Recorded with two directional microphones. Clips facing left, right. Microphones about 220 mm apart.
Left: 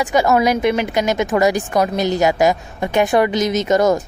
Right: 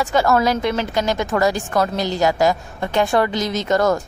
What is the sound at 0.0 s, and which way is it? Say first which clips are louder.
A woman's voice: left 2 dB; 15° left (ahead or behind).